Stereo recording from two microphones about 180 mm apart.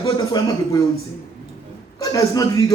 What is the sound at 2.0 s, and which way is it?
Speech, 20° left (ahead or behind).